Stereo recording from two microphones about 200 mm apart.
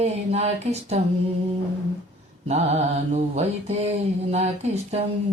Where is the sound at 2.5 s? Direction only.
30° right (ahead or behind).